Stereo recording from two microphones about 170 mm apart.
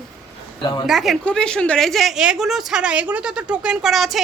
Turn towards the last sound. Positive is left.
turn(degrees=0)  # may be behind; listen again after turning